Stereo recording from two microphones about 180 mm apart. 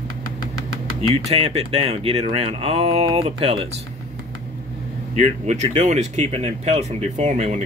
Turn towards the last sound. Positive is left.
turn(degrees=-40)  # may be behind; listen again after turning